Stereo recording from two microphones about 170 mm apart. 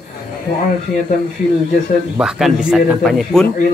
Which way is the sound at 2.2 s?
Centre (ahead or behind).